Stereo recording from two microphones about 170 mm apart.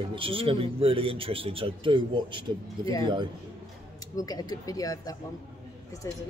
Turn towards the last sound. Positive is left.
turn(degrees=15)  # may be behind; listen again after turning